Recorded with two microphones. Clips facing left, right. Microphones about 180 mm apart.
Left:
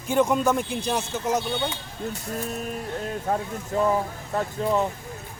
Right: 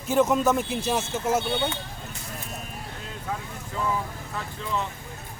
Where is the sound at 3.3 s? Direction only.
45° left (ahead or behind).